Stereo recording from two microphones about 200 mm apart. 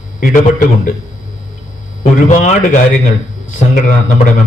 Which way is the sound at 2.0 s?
40° left (ahead or behind).